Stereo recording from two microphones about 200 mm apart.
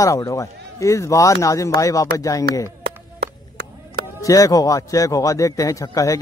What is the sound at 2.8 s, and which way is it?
Chop, 55° right (ahead or behind).